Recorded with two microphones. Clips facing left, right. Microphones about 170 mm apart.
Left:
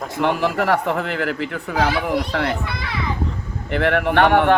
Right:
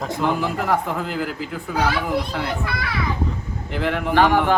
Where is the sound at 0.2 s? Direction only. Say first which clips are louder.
Left 4 dB; 70° left (ahead or behind).